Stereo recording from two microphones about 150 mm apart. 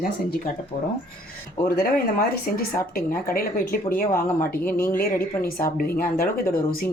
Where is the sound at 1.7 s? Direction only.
85° left.